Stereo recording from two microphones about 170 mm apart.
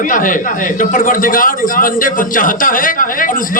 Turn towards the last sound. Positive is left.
turn(degrees=50)  # may be behind; listen again after turning